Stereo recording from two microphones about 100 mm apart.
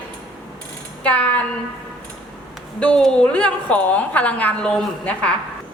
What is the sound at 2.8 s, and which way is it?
A woman's voice, 10° left (ahead or behind).